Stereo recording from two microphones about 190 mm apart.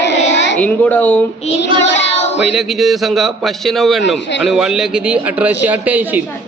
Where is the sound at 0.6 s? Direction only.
10° left (ahead or behind).